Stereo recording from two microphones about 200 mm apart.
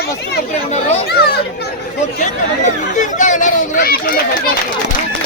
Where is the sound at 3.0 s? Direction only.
40° left (ahead or behind).